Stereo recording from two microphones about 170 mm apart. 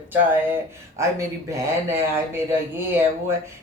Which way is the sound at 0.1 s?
10° right (ahead or behind).